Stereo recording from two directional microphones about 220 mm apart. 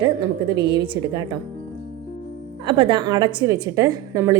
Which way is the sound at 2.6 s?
20° right (ahead or behind).